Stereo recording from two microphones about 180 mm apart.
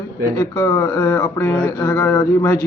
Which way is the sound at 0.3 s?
15° left (ahead or behind).